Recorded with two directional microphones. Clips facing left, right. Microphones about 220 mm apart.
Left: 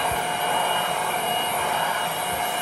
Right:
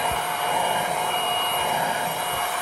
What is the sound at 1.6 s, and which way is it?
Jet engine, 10° right (ahead or behind).